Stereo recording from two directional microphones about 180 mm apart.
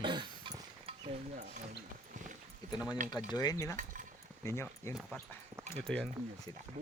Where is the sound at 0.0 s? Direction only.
25° right (ahead or behind).